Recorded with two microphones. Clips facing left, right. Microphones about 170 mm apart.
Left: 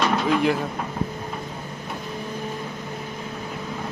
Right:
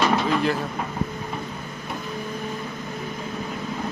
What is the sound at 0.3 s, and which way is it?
Speech, 15° left (ahead or behind).